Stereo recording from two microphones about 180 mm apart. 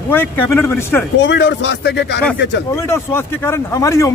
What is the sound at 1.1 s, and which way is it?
Speech, 80° left.